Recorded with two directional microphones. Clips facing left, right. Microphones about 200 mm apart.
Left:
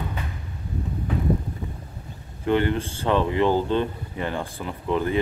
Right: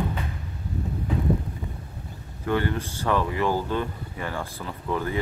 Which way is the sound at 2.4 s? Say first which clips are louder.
Left 4 dB; 20° left (ahead or behind).